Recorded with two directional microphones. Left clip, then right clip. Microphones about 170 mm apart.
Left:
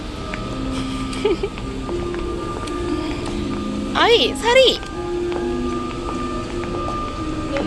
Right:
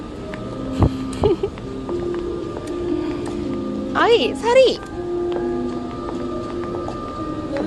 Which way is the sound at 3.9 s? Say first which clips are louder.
Left 1 dB; 25° right (ahead or behind).